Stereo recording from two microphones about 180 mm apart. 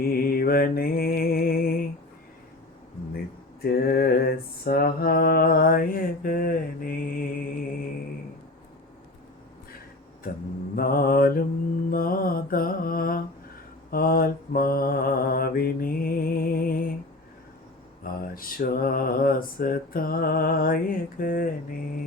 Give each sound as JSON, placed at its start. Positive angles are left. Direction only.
{"t": 0.0, "sound": "mantra", "side_deg": 55}
{"t": 3.6, "sound": "mantra", "side_deg": 60}
{"t": 10.8, "sound": "mantra", "side_deg": 55}
{"t": 18.0, "sound": "mantra", "side_deg": 55}